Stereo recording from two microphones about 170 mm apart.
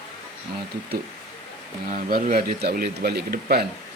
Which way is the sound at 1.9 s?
60° right (ahead or behind).